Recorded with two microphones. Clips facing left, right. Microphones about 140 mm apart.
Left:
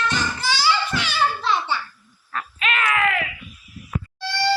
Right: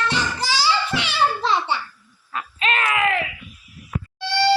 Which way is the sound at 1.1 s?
25° right (ahead or behind).